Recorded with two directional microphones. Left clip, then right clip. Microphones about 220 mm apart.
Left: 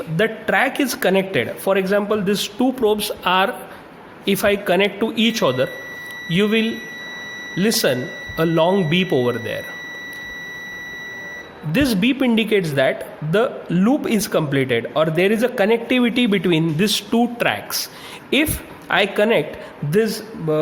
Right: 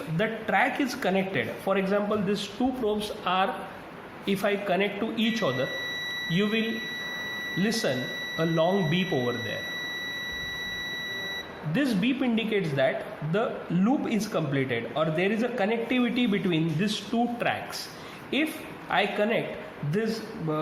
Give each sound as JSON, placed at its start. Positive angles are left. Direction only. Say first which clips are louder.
{"t": 0.2, "sound": "speech", "louder": "left 7 dB", "side_deg": 50}
{"t": 11.7, "sound": "speech", "louder": "left 9 dB", "side_deg": 45}